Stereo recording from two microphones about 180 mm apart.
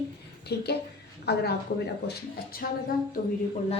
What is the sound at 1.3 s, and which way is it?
Speech, 65° left (ahead or behind).